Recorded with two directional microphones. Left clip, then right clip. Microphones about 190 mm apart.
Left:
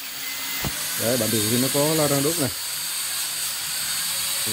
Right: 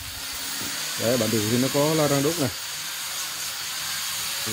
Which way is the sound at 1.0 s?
5° right (ahead or behind).